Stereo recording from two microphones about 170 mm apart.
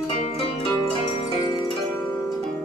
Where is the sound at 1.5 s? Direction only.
30° left (ahead or behind).